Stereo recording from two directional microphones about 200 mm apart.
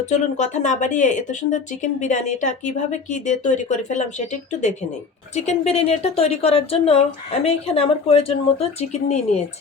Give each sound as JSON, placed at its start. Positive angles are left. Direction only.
{"t": 0.0, "sound": "speech", "side_deg": 35}